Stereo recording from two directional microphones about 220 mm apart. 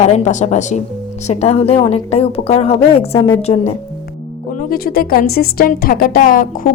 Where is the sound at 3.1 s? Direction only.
10° left (ahead or behind).